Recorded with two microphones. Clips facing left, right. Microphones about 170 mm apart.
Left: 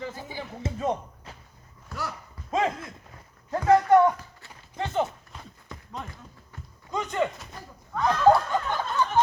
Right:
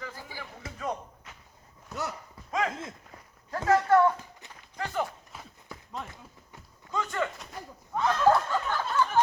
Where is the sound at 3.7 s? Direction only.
20° left (ahead or behind).